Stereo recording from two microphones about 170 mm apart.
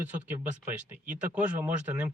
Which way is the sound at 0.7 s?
50° right (ahead or behind).